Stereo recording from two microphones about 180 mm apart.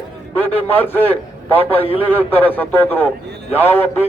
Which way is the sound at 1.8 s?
30° left (ahead or behind).